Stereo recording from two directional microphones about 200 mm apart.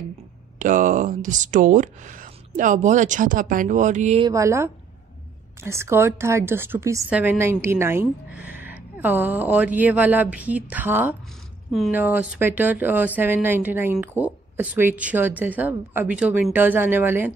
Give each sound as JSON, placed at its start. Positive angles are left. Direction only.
{"t": 0.6, "sound": "speech", "side_deg": -40}
{"t": 4.2, "sound": "a woman's voice", "side_deg": -15}